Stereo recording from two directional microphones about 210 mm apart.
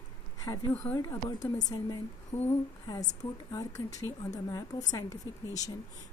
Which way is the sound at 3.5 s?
15° left (ahead or behind).